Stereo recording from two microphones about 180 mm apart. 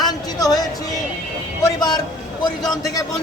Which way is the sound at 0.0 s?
20° left (ahead or behind).